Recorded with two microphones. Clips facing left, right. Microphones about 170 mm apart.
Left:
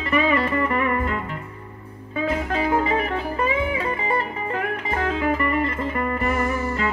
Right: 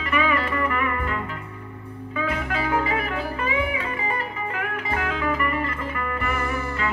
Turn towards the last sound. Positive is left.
turn(degrees=35)  # may be behind; listen again after turning